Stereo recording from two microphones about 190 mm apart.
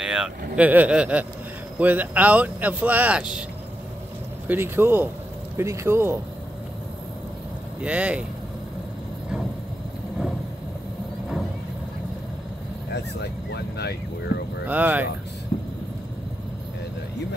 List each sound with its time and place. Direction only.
0.0 s vehicle: 5° right (ahead or behind)
0.6 s speech: 10° right (ahead or behind)
4.5 s speech: 10° right (ahead or behind)
7.8 s speech: 5° right (ahead or behind)
12.9 s speech: 60° left (ahead or behind)
14.7 s speech: 10° right (ahead or behind)